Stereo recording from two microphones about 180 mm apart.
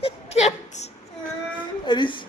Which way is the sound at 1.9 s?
25° left (ahead or behind).